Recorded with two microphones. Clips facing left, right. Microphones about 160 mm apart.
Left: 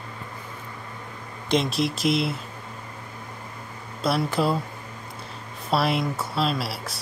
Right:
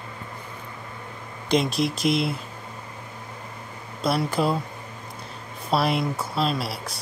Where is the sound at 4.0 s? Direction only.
Centre (ahead or behind).